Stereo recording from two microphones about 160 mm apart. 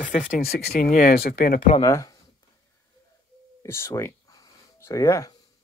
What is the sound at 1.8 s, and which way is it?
Speech, 20° left (ahead or behind).